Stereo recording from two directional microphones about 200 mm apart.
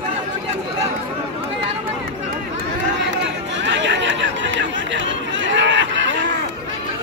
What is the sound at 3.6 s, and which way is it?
Chatter, 65° right (ahead or behind).